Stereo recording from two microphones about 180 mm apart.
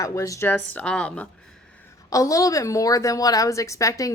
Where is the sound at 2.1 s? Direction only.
20° left (ahead or behind).